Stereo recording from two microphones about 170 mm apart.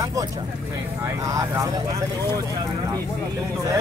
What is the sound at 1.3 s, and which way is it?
Speech, 20° right (ahead or behind).